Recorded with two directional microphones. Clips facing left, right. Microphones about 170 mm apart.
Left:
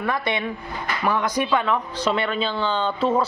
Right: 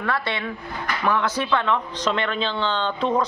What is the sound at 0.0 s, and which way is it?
A woman's voice, 15° left (ahead or behind).